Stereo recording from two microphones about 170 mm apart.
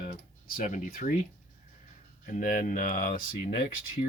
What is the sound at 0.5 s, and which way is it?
Speech, 50° left (ahead or behind).